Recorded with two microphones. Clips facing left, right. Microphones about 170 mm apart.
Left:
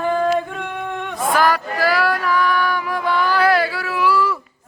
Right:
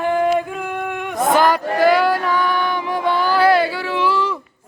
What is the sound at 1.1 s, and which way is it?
Music, 20° right (ahead or behind).